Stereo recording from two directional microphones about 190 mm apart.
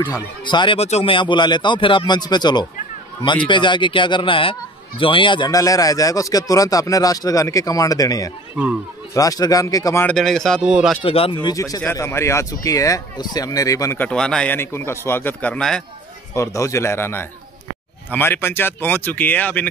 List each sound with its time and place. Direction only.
0.0 s a man's voice: 25° left (ahead or behind)
10.1 s a man's voice: centre (ahead or behind)
11.0 s a man's voice: 30° left (ahead or behind)
11.4 s a man's voice: 20° left (ahead or behind)
16.3 s speech: 15° left (ahead or behind)